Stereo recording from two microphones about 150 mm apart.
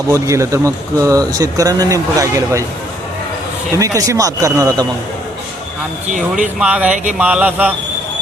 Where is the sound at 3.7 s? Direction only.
20° right (ahead or behind).